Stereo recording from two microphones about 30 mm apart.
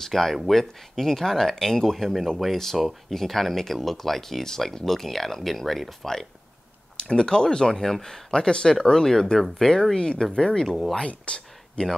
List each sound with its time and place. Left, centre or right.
0.0 s speech: centre
7.1 s speech: left
8.3 s speech: left
11.2 s a sound: left